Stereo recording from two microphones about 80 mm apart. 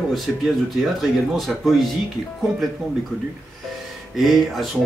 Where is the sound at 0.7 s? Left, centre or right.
Centre.